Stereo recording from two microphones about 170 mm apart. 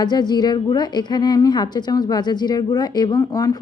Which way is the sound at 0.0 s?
25° left (ahead or behind).